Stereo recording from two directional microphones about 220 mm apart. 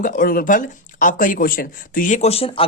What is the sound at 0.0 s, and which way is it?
Speech, 40° left (ahead or behind).